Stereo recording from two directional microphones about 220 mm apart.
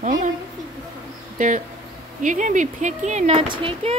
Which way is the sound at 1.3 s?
35° right (ahead or behind).